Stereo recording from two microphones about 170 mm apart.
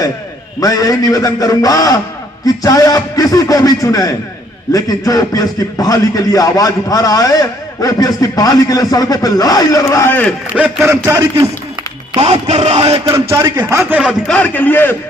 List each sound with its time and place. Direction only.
0.6 s a man's voice: 20° left (ahead or behind)
10.8 s a man's voice: 15° right (ahead or behind)
12.2 s music: 40° right (ahead or behind)
13.3 s a man's voice: 15° right (ahead or behind)
14.3 s a man's voice: 10° left (ahead or behind)